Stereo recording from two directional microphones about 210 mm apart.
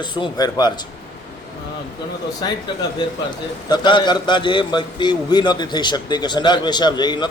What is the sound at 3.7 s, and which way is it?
A man's voice, 20° left (ahead or behind).